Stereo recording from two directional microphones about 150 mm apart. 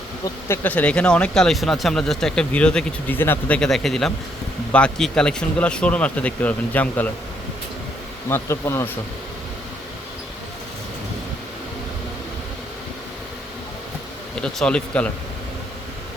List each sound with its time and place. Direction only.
0.4 s speech: 15° left (ahead or behind)
8.3 s speech: 15° left (ahead or behind)
14.3 s speech: 5° left (ahead or behind)